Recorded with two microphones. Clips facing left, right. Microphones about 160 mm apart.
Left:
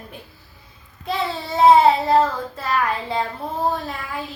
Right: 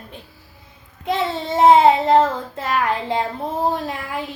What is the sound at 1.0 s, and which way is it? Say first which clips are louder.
A child's voice: right 3 dB; 20° right (ahead or behind).